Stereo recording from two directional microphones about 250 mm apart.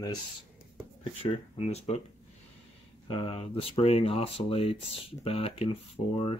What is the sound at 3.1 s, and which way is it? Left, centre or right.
Speech, left.